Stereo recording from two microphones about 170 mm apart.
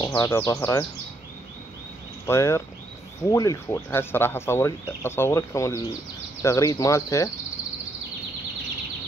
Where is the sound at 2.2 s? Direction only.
15° left (ahead or behind).